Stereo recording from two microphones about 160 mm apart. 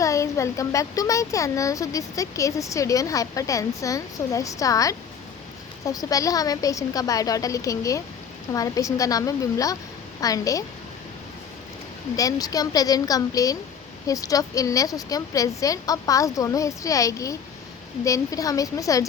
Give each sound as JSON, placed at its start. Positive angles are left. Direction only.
{"t": 0.0, "sound": "speech", "side_deg": 20}
{"t": 12.1, "sound": "speech", "side_deg": 20}